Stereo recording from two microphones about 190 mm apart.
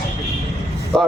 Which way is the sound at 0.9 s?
Centre (ahead or behind).